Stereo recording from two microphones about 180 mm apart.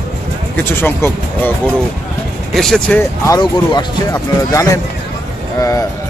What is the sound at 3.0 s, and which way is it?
Speech, 20° left (ahead or behind).